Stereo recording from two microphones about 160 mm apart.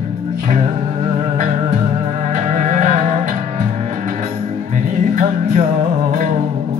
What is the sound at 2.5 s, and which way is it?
Music, 50° right (ahead or behind).